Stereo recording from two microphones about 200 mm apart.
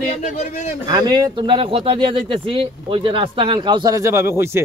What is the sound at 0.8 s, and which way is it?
Speech, 20° right (ahead or behind).